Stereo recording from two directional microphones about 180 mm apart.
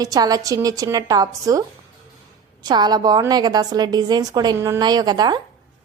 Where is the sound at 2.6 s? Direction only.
25° right (ahead or behind).